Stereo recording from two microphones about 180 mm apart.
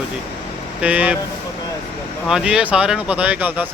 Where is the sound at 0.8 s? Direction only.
10° right (ahead or behind).